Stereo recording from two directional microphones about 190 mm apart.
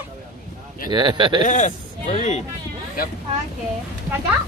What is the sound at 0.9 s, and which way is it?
Speech, 25° right (ahead or behind).